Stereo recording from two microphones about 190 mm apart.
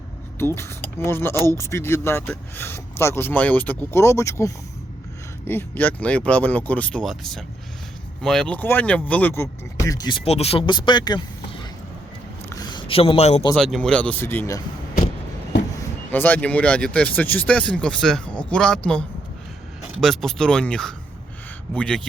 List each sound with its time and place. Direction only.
0.3 s speech: 15° left (ahead or behind)
12.5 s a sound: 20° left (ahead or behind)
13.6 s speech: centre (ahead or behind)
15.8 s speech: 10° left (ahead or behind)
20.0 s speech: centre (ahead or behind)